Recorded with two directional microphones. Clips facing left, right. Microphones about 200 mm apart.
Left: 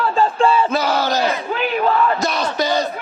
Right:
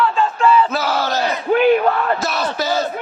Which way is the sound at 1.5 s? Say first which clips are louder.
Right 8 dB; 50° right (ahead or behind).